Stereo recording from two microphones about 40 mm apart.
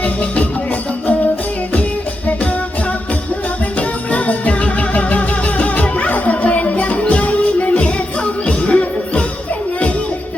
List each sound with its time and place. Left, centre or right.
0.0 s music: left
3.8 s music: left